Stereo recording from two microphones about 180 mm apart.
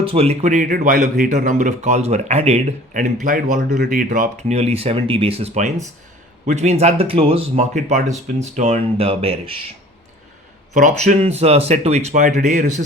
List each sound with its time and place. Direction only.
0.0 s speech: 30° right (ahead or behind); by 3.6 s 50° right (ahead or behind)
3.6 s speech: 65° right (ahead or behind); by 9.7 s 30° right (ahead or behind)
10.8 s speech: 40° right (ahead or behind)